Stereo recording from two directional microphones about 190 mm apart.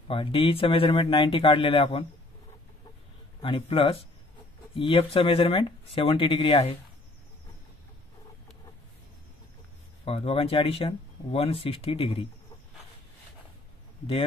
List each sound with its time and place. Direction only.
0.1 s speech: 30° left (ahead or behind)
3.4 s speech: 25° left (ahead or behind)
10.0 s speech: 30° left (ahead or behind)